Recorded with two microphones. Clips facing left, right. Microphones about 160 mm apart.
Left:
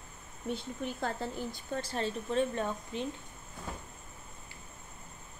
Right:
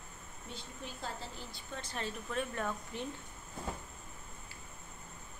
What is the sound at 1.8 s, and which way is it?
Speech, 30° left (ahead or behind).